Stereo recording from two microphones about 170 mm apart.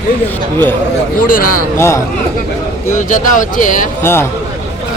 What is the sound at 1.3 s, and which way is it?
Speech, 55° left (ahead or behind).